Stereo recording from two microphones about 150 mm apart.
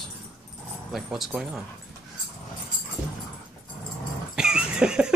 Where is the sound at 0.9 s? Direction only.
Centre (ahead or behind).